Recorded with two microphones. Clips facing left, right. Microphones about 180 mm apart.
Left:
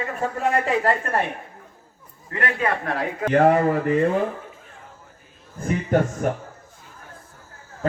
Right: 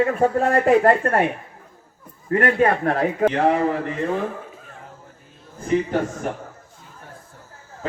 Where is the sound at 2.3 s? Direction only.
45° right (ahead or behind).